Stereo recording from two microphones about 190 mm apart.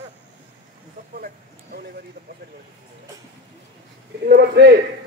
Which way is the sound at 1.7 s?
55° right (ahead or behind).